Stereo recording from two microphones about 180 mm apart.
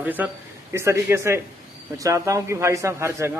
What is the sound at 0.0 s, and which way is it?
A man's voice, 10° right (ahead or behind).